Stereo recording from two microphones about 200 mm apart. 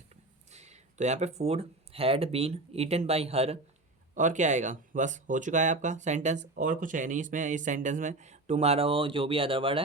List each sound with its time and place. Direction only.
0.5 s speech: 35° right (ahead or behind)